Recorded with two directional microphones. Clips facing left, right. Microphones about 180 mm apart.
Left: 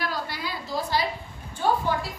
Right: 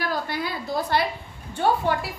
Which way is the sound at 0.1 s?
55° right (ahead or behind).